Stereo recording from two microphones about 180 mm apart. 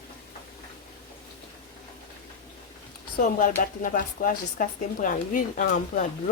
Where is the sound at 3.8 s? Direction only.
50° left (ahead or behind).